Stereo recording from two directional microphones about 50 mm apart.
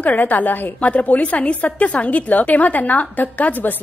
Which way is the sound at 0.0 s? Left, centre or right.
Left.